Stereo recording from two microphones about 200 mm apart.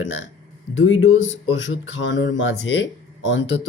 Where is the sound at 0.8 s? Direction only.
85° left.